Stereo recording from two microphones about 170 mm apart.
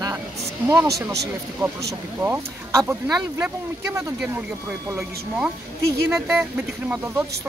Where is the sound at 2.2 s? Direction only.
15° right (ahead or behind).